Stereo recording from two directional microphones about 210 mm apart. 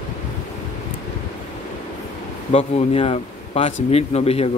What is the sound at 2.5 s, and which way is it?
A man's voice, 30° left (ahead or behind).